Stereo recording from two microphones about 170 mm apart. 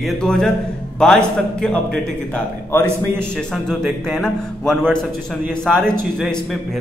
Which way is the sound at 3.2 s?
5° left (ahead or behind).